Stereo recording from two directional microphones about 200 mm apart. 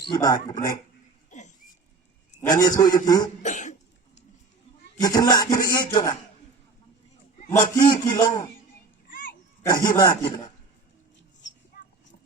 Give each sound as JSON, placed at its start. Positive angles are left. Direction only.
{"t": 0.1, "sound": "a man's voice", "side_deg": 20}
{"t": 1.3, "sound": "a sound", "side_deg": 40}
{"t": 2.4, "sound": "a man's voice", "side_deg": 20}
{"t": 3.4, "sound": "cough", "side_deg": 40}
{"t": 4.9, "sound": "a man's voice", "side_deg": 20}
{"t": 7.6, "sound": "a man's voice", "side_deg": 25}
{"t": 9.0, "sound": "dog", "side_deg": 45}
{"t": 9.6, "sound": "a man's voice", "side_deg": 20}